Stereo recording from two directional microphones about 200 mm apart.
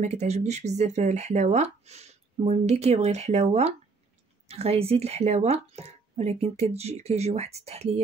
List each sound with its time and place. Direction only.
0.0 s speech: 35° right (ahead or behind)